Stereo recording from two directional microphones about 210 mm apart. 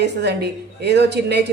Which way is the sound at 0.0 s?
55° right (ahead or behind).